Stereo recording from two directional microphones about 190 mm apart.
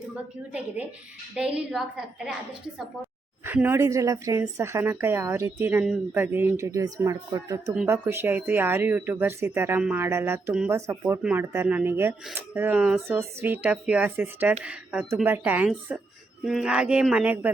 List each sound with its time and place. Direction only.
1.4 s speech: 5° right (ahead or behind)
3.4 s speech: 10° right (ahead or behind)